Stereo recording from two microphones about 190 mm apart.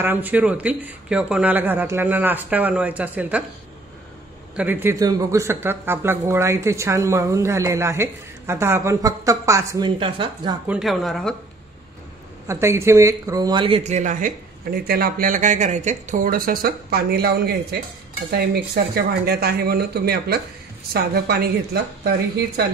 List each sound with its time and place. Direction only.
0.0 s speech: 10° right (ahead or behind)
4.6 s speech: 10° right (ahead or behind)
10.7 s speech: centre (ahead or behind)
12.4 s speech: 15° right (ahead or behind); by 14.3 s 40° right (ahead or behind)
14.9 s speech: 50° right (ahead or behind)